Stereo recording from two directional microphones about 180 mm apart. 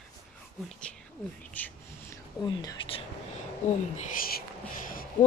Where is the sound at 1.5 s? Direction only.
10° left (ahead or behind).